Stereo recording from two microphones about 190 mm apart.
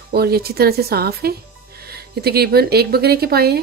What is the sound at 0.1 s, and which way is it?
A woman's voice, 55° right (ahead or behind).